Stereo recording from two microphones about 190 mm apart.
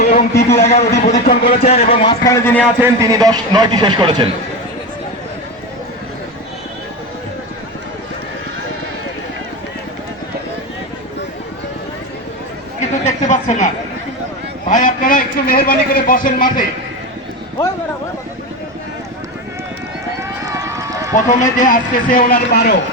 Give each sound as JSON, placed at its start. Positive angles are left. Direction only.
{"t": 0.0, "sound": "a sound", "side_deg": 40}
{"t": 0.3, "sound": "a man's voice", "side_deg": 15}
{"t": 0.9, "sound": "speech", "side_deg": 55}
{"t": 1.5, "sound": "speech", "side_deg": 35}
{"t": 2.2, "sound": "a man's voice", "side_deg": 15}
{"t": 2.8, "sound": "a man's voice", "side_deg": -15}
{"t": 13.1, "sound": "a sound", "side_deg": 40}
{"t": 14.7, "sound": "a man's voice", "side_deg": 45}
{"t": 20.4, "sound": "run", "side_deg": -15}
{"t": 21.2, "sound": "a man's voice", "side_deg": 45}